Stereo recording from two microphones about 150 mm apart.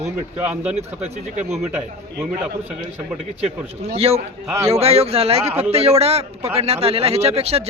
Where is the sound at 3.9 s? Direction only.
40° right (ahead or behind).